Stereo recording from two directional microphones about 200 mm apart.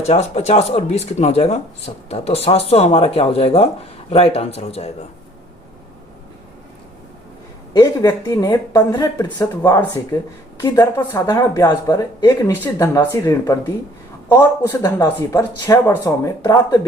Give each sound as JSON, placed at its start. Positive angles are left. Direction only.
{"t": 0.0, "sound": "speech", "side_deg": 30}
{"t": 7.7, "sound": "speech", "side_deg": 20}